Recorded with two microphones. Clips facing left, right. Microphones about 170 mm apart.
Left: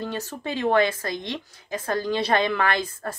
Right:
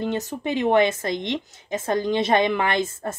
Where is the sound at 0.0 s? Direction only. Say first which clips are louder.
Right 5 dB; 20° right (ahead or behind).